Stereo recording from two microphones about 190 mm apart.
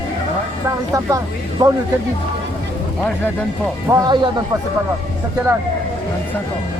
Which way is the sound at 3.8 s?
20° right (ahead or behind).